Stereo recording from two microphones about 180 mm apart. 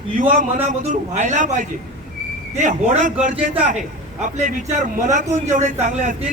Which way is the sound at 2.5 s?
40° right (ahead or behind).